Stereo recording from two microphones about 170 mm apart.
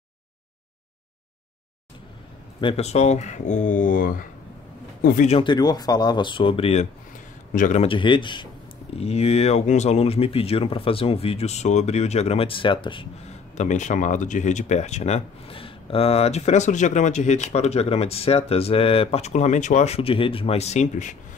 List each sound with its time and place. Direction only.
2.6 s speech: 40° left (ahead or behind)
5.3 s speech: 30° left (ahead or behind)
7.5 s speech: 50° left (ahead or behind)
7.8 s speech: 30° left (ahead or behind); by 21.2 s 45° left (ahead or behind)